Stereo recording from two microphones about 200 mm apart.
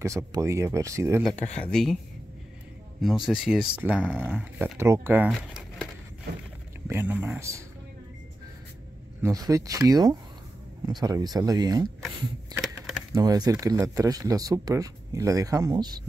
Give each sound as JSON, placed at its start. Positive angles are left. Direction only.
{"t": 0.0, "sound": "speech", "side_deg": -15}
{"t": 1.3, "sound": "speech", "side_deg": 35}
{"t": 1.6, "sound": "speech", "side_deg": 0}
{"t": 3.3, "sound": "speech", "side_deg": -5}
{"t": 6.9, "sound": "speech", "side_deg": -10}
{"t": 9.2, "sound": "speech", "side_deg": -15}
{"t": 12.5, "sound": "a sound", "side_deg": 0}
{"t": 13.1, "sound": "speech", "side_deg": -20}